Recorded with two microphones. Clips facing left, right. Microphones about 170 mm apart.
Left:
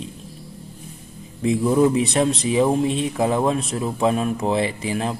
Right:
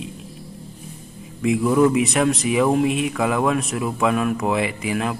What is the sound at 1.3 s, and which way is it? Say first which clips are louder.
Speech: even; 30° left (ahead or behind).